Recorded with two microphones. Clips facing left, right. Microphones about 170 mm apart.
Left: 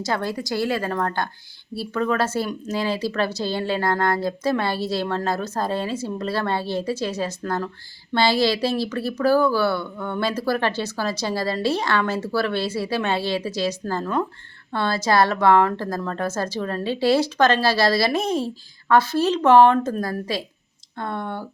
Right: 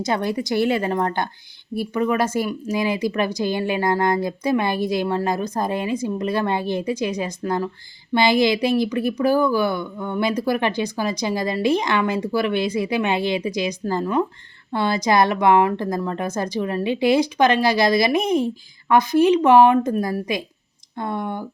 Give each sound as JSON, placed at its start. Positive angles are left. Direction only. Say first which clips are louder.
{"t": 0.0, "sound": "speech", "louder": "right 3 dB", "side_deg": -20}